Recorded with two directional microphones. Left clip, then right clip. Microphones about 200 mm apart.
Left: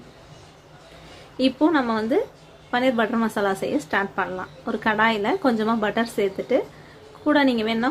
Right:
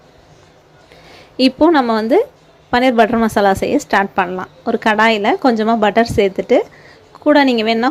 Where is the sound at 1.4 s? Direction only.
35° right (ahead or behind).